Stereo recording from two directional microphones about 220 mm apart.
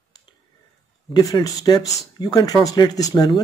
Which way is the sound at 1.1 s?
15° left (ahead or behind).